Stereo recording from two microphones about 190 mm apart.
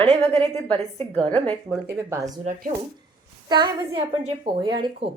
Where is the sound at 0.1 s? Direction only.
30° right (ahead or behind).